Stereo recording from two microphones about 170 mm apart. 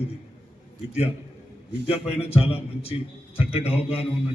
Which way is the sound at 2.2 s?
35° left (ahead or behind).